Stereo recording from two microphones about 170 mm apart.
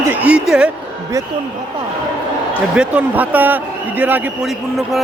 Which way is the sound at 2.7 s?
5° right (ahead or behind).